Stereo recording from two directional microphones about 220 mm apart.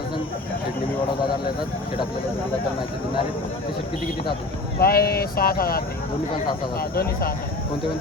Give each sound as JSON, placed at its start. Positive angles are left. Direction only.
{"t": 4.8, "sound": "speech", "side_deg": 45}